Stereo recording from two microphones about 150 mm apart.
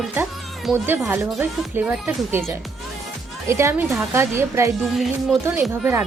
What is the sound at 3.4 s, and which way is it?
Speech, 20° right (ahead or behind).